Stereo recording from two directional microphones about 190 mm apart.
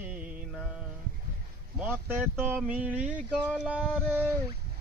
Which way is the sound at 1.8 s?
10° right (ahead or behind).